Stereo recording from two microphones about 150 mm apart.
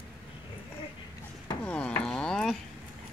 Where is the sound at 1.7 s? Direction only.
10° left (ahead or behind).